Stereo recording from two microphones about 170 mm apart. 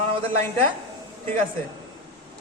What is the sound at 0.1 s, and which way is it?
Speech, 30° right (ahead or behind).